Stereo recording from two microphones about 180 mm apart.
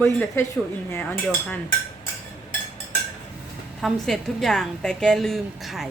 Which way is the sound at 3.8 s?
Centre (ahead or behind).